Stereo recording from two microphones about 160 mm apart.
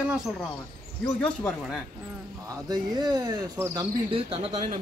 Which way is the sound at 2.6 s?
25° right (ahead or behind).